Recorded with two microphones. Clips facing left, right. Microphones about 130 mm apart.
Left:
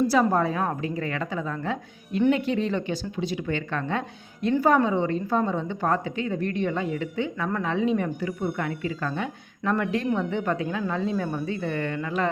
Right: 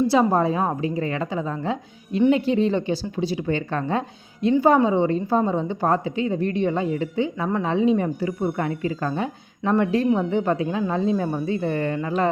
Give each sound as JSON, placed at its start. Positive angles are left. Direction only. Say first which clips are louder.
{"t": 0.1, "sound": "a woman's voice", "louder": "right 3 dB", "side_deg": -25}